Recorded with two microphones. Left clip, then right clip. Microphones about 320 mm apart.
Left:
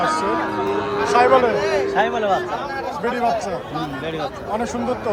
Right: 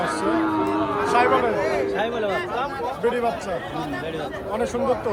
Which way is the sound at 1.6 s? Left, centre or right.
Left.